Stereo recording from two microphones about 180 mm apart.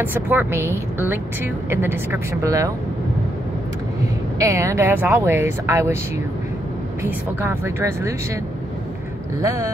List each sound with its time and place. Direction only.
0.0 s speech: 10° right (ahead or behind)
4.4 s speech: 15° right (ahead or behind)
7.0 s speech: 15° right (ahead or behind)
9.4 s speech: 15° right (ahead or behind)